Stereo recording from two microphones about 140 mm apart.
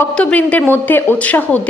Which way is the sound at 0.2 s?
10° left (ahead or behind).